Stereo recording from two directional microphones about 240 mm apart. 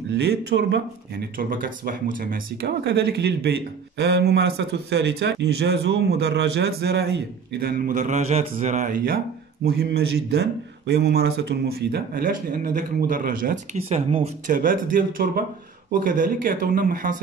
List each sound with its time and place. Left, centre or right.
0.2 s speech: right